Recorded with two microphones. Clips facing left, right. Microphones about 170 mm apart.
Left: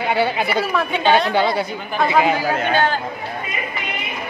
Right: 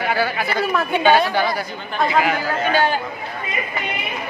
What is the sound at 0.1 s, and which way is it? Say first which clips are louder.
Speech: left 4 dB; 25° left (ahead or behind).